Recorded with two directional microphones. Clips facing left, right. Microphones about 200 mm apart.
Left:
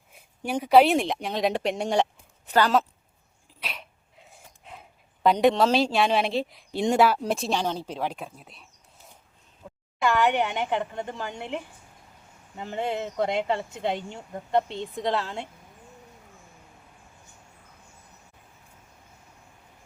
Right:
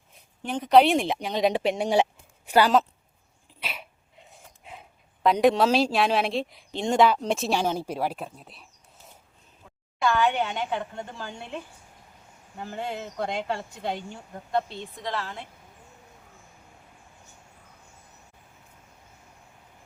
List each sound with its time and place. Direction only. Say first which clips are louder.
0.4 s speech: even; 10° left (ahead or behind); by 2.7 s 10° right (ahead or behind)
3.6 s dog: right 1 dB; centre (ahead or behind)
5.2 s speech: even; centre (ahead or behind)
10.0 s speech: left 1 dB; 15° left (ahead or behind)